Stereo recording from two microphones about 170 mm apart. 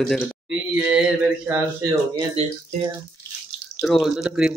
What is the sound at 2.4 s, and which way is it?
Speech, 40° right (ahead or behind).